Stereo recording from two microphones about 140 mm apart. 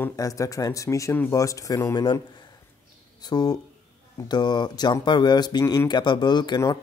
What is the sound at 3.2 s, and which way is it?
Speech, 30° left (ahead or behind).